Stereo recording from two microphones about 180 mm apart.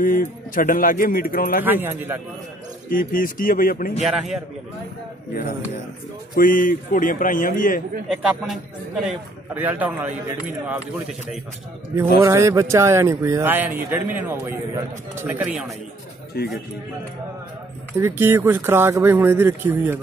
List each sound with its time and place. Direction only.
0.0 s a man's voice: 50° left (ahead or behind)
1.6 s speech: 10° right (ahead or behind)
2.9 s a man's voice: 50° left (ahead or behind)
4.0 s a man's voice: 5° right (ahead or behind)
6.3 s a man's voice: 50° left (ahead or behind)
8.1 s a man's voice: centre (ahead or behind)
12.2 s speech: 15° right (ahead or behind)
16.3 s a man's voice: 60° left (ahead or behind)
17.9 s speech: 15° right (ahead or behind)